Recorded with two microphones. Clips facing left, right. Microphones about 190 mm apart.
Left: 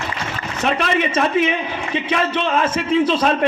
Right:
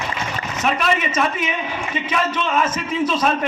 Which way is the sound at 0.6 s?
30° left (ahead or behind).